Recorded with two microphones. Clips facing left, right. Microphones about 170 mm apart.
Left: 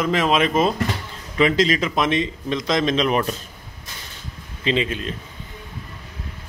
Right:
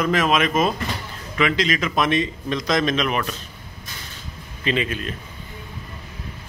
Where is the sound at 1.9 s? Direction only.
20° left (ahead or behind).